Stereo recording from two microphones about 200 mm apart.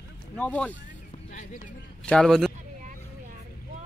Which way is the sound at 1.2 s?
40° left (ahead or behind).